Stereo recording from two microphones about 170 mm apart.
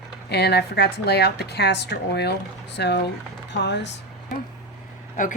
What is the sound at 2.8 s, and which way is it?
Speech, 90° left.